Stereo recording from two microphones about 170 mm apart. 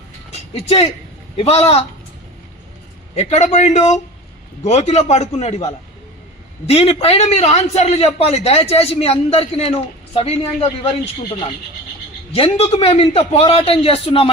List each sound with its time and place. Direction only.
0.5 s a man's voice: 35° left (ahead or behind)
3.2 s a man's voice: 40° left (ahead or behind)
12.3 s a man's voice: 35° left (ahead or behind)